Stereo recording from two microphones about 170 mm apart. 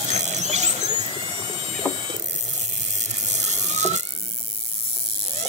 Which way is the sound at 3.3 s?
40° right (ahead or behind).